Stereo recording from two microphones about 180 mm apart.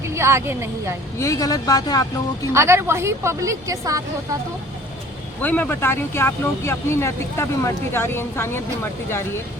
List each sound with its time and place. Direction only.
0.0 s a woman's voice: 15° right (ahead or behind)
1.2 s speech: 20° left (ahead or behind)
2.5 s a woman's voice: 15° right (ahead or behind)
5.4 s speech: 10° left (ahead or behind)